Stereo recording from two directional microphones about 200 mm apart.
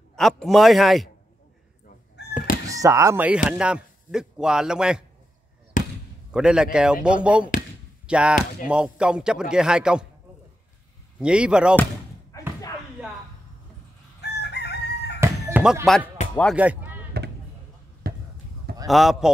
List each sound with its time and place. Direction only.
0.1 s a man's voice: centre (ahead or behind)
2.7 s a man's voice: 15° right (ahead or behind)
5.7 s basketball bounce: 40° left (ahead or behind)
6.3 s a man's voice: 5° right (ahead or behind)
11.1 s a man's voice: 5° right (ahead or behind)
12.3 s a sound: 15° left (ahead or behind)
14.2 s chicken: 55° left (ahead or behind)
15.1 s chicken: 15° right (ahead or behind)
15.9 s a man's voice: centre (ahead or behind)
17.1 s a sound: 55° right (ahead or behind)
18.0 s basketball bounce: 50° right (ahead or behind)
18.9 s a man's voice: centre (ahead or behind)